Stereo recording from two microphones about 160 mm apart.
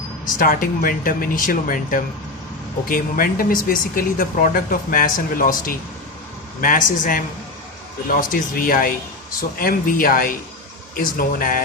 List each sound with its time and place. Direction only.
0.3 s speech: 60° left (ahead or behind)